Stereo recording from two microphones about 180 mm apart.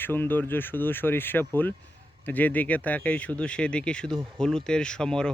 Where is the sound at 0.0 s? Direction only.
10° left (ahead or behind).